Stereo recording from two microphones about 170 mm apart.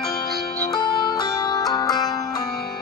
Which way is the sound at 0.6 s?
25° left (ahead or behind).